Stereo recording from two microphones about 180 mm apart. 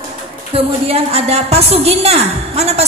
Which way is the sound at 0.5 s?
35° right (ahead or behind).